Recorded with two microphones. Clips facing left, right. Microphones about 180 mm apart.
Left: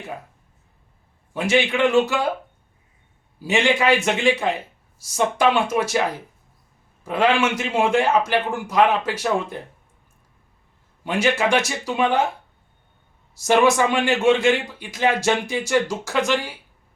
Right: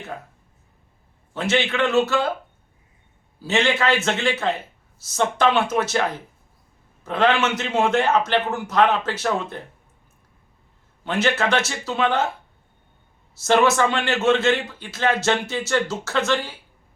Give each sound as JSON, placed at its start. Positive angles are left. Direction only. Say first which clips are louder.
{"t": 1.3, "sound": "a man's voice", "louder": "left 2 dB", "side_deg": 10}
{"t": 3.4, "sound": "a man's voice", "louder": "left 2 dB", "side_deg": 15}
{"t": 11.0, "sound": "a man's voice", "louder": "left 1 dB", "side_deg": 10}
{"t": 13.3, "sound": "a man's voice", "louder": "left 1 dB", "side_deg": 15}